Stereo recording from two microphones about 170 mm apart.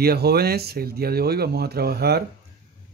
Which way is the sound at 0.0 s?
65° right (ahead or behind).